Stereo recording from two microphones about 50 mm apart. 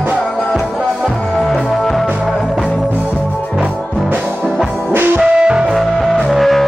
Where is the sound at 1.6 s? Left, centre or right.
Centre.